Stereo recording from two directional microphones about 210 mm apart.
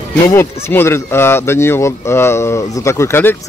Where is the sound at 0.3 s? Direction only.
10° left (ahead or behind).